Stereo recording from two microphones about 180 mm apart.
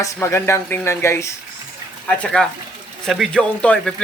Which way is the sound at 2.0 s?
5° left (ahead or behind).